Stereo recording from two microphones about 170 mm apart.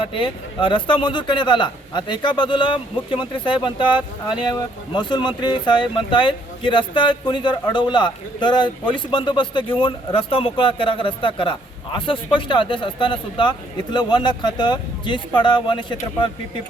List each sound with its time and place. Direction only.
0.0 s a man's voice: 30° left (ahead or behind)